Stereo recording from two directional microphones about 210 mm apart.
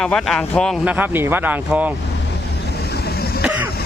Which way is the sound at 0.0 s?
5° left (ahead or behind).